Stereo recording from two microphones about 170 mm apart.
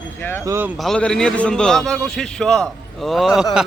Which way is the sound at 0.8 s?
5° left (ahead or behind).